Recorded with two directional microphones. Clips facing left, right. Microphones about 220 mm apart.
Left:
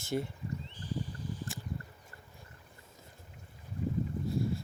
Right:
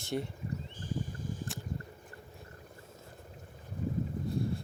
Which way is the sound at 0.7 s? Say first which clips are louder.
Right 1 dB; 45° right (ahead or behind).